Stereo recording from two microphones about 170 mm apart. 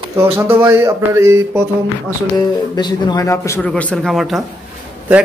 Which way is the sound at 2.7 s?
25° left (ahead or behind).